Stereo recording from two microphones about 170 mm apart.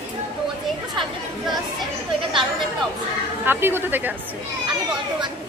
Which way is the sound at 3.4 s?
10° right (ahead or behind).